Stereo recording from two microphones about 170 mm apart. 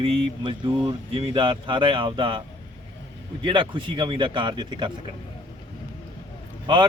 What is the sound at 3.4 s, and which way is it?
A man's voice, 30° right (ahead or behind).